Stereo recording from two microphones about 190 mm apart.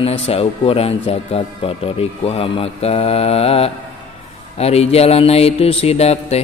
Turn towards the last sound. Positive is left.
turn(degrees=35)  # may be behind; listen again after turning